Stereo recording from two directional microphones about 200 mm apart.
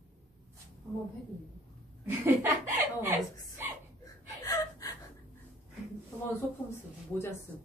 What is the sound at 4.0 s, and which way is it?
Gasp, 15° left (ahead or behind).